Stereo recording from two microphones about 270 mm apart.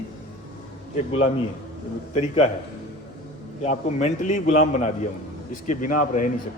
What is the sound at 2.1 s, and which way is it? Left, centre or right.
Speech, centre.